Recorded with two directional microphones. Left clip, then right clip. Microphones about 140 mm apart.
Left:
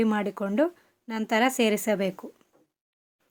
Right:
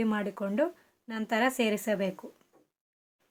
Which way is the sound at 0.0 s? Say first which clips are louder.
Left 5 dB; 40° left (ahead or behind).